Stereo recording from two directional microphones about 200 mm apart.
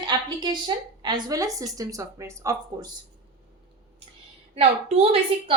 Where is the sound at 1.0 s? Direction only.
20° right (ahead or behind).